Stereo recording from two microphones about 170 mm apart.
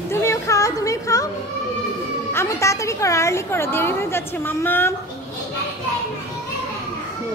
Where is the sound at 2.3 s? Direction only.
15° left (ahead or behind).